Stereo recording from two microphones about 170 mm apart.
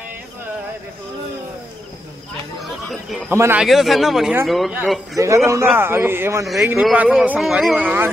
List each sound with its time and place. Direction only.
2.6 s chatter: centre (ahead or behind)
3.3 s a man's voice: 15° right (ahead or behind)
3.6 s speech: centre (ahead or behind)
5.1 s a man's voice: 20° right (ahead or behind)